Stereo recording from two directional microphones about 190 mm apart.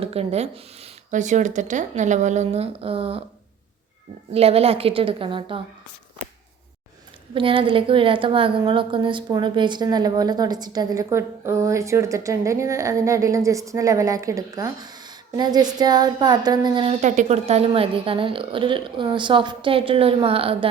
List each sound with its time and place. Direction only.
0.0 s speech: 30° right (ahead or behind)
4.3 s speech: 30° right (ahead or behind)
7.3 s a woman's voice: 25° right (ahead or behind)
17.0 s a woman's voice: 40° right (ahead or behind)